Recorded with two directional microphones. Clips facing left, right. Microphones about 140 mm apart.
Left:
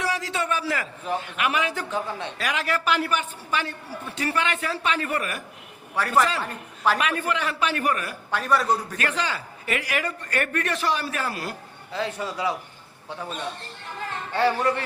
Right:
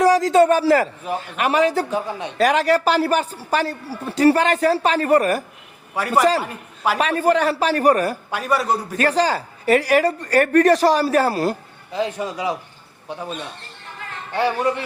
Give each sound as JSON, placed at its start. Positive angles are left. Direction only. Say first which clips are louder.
{"t": 0.0, "sound": "a sound", "louder": "right 14 dB", "side_deg": -40}
{"t": 1.2, "sound": "a woman's voice", "louder": "right 11 dB", "side_deg": -35}
{"t": 1.9, "sound": "a man's voice", "louder": "right 4 dB", "side_deg": -15}
{"t": 2.4, "sound": "a woman's voice", "louder": "right 11 dB", "side_deg": -40}
{"t": 5.9, "sound": "a man's voice", "louder": "right 5 dB", "side_deg": -10}
{"t": 7.0, "sound": "a woman's voice", "louder": "right 8 dB", "side_deg": -35}
{"t": 8.3, "sound": "a man's voice", "louder": "left 2 dB", "side_deg": -10}
{"t": 9.0, "sound": "a woman's voice", "louder": "right 9 dB", "side_deg": -35}
{"t": 11.9, "sound": "a man's voice", "louder": "right 5 dB", "side_deg": -15}
{"t": 14.3, "sound": "a man's voice", "louder": "right 2 dB", "side_deg": -15}